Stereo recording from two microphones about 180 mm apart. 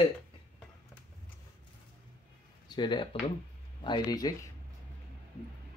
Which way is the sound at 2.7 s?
25° left (ahead or behind).